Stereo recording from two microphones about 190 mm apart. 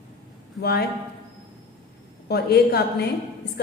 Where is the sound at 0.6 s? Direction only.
55° left (ahead or behind).